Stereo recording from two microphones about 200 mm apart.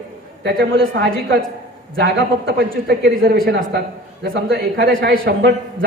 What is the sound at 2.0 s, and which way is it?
A man's voice, 55° right (ahead or behind).